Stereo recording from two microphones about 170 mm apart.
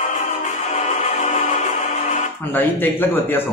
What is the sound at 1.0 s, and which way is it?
Music, 45° left (ahead or behind).